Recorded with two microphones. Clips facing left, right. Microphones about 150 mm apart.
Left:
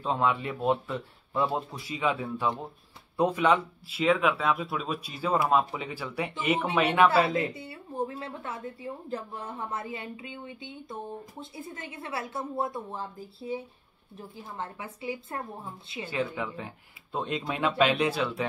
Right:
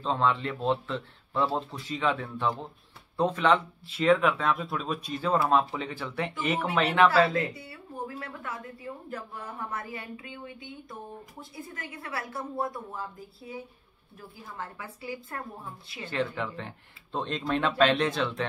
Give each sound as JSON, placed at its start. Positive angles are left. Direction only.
{"t": 0.0, "sound": "a woman's voice", "side_deg": 10}
{"t": 16.1, "sound": "speech", "side_deg": 10}